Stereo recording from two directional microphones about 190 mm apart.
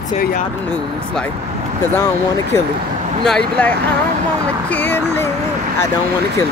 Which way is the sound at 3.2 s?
5° left (ahead or behind).